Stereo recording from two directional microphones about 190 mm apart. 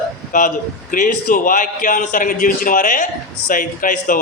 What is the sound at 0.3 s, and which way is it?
A man's voice, 45° left (ahead or behind).